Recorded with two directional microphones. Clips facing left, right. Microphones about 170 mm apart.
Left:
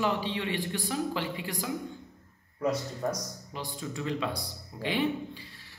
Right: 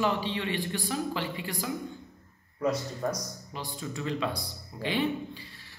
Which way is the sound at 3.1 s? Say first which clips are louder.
Even; 15° left (ahead or behind).